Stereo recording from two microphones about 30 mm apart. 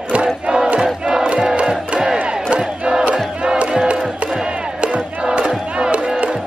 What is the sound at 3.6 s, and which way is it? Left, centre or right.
Music, right.